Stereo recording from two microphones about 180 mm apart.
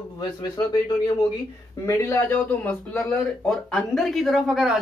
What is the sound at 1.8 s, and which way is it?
Speech, 15° left (ahead or behind).